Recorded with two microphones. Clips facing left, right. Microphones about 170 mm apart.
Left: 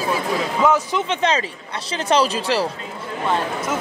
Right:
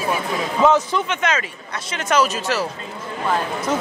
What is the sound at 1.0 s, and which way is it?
A woman's voice, 30° left (ahead or behind).